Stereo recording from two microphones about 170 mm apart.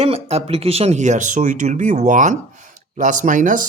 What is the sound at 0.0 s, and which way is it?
Speech, 35° right (ahead or behind).